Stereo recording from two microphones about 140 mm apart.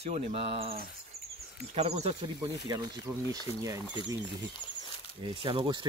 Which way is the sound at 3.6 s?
25° right (ahead or behind).